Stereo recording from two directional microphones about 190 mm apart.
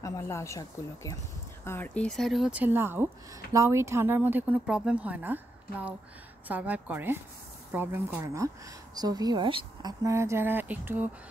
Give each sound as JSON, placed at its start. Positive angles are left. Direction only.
{"t": 0.0, "sound": "speech", "side_deg": 15}